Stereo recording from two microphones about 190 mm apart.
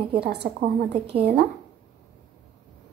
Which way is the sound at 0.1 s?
60° right (ahead or behind).